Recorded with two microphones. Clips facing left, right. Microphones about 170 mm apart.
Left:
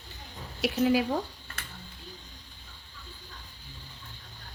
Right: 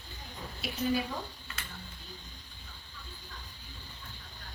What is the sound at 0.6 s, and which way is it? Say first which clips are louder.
Speech: left 7 dB; 75° left (ahead or behind).